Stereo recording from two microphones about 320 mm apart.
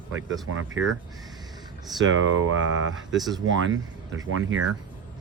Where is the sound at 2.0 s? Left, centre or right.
Right.